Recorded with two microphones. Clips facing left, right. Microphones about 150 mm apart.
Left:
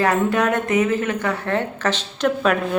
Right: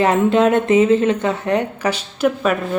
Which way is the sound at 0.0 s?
20° right (ahead or behind).